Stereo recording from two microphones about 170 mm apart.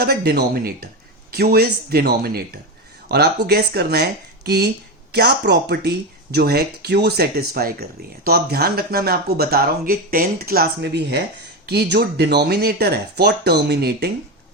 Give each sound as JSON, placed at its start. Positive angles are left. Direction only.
{"t": 0.0, "sound": "speech", "side_deg": -65}